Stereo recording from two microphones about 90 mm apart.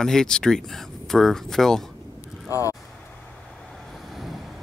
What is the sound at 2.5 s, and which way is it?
Speech, 40° left (ahead or behind).